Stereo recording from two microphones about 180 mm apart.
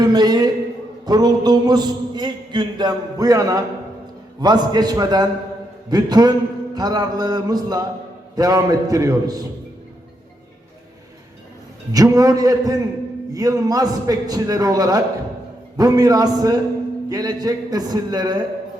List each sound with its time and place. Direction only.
0.0 s a man's voice: 20° right (ahead or behind)
11.9 s a man's voice: 20° right (ahead or behind)